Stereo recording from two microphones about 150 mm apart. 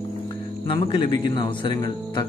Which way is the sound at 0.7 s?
35° left (ahead or behind).